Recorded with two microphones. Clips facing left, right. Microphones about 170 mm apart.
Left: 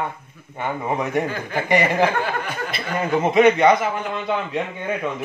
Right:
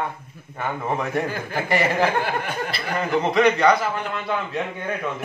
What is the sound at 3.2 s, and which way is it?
A man's voice, 25° left (ahead or behind).